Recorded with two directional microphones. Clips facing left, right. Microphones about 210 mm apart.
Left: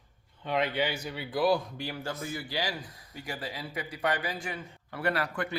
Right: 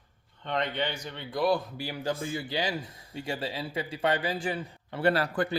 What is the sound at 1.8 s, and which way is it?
Speech, 10° right (ahead or behind).